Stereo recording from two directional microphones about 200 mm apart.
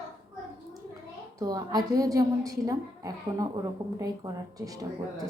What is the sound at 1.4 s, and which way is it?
A woman's voice, 20° right (ahead or behind).